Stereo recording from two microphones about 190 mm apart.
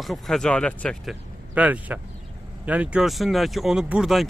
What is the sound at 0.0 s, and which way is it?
Speech, centre (ahead or behind).